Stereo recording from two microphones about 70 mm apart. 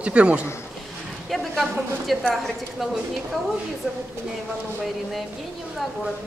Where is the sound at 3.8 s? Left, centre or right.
Centre.